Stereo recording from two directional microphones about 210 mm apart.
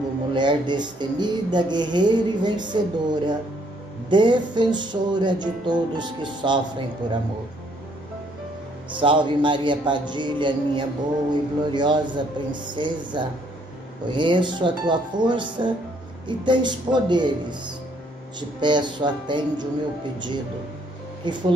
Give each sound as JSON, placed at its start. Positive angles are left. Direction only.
{"t": 0.3, "sound": "speech", "side_deg": -20}
{"t": 8.9, "sound": "speech", "side_deg": -25}
{"t": 21.2, "sound": "speech", "side_deg": -20}